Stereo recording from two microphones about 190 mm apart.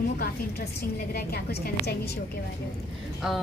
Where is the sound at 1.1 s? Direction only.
55° left (ahead or behind).